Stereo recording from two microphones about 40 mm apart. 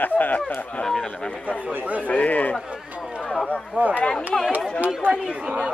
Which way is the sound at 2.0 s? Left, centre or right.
Left.